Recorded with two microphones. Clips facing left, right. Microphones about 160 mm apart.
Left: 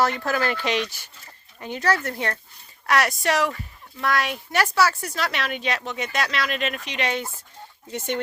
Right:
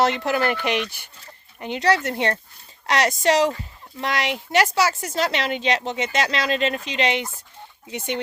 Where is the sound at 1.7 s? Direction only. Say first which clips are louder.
Right 3 dB; 75° right (ahead or behind).